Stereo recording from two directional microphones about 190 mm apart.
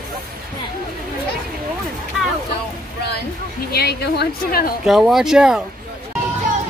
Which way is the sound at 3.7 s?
55° left (ahead or behind).